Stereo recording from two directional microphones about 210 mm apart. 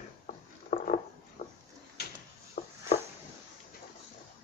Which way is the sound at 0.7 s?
35° left (ahead or behind).